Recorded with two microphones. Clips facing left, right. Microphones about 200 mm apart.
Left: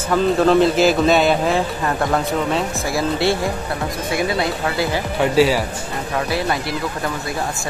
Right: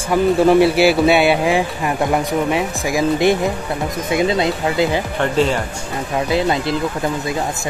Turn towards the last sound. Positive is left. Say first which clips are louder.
# right 4 dB
turn(degrees=-20)  # may be behind; listen again after turning